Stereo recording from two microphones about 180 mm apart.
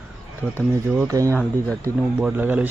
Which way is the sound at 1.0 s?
15° right (ahead or behind).